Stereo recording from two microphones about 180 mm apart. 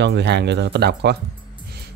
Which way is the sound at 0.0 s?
70° right (ahead or behind).